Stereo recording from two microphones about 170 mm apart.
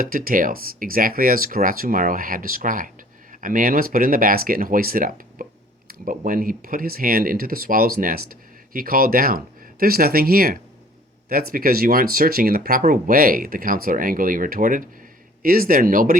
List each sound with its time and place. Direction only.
0.0 s speech: 55° right (ahead or behind)